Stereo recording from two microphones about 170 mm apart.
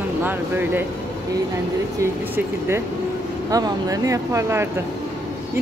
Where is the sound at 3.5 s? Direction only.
20° right (ahead or behind).